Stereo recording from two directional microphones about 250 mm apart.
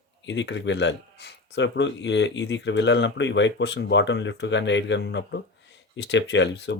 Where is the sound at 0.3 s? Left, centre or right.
Left.